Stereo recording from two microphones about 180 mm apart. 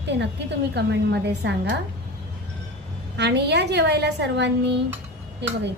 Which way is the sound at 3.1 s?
70° right (ahead or behind).